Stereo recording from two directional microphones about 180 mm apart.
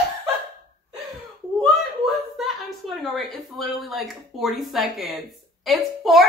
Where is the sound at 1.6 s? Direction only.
Centre (ahead or behind).